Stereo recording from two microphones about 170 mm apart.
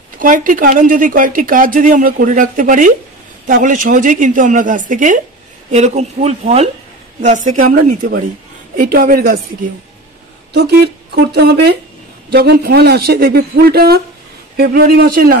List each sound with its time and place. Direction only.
0.2 s speech: 50° right (ahead or behind)
10.5 s a man's voice: 75° right (ahead or behind)